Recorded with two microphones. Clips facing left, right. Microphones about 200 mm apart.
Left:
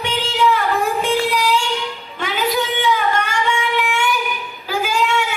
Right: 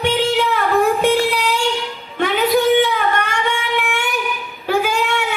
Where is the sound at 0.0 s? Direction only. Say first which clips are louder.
Right 2 dB; 60° right (ahead or behind).